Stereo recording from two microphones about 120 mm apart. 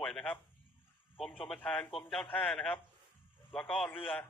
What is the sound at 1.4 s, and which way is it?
A man's voice, 10° left (ahead or behind).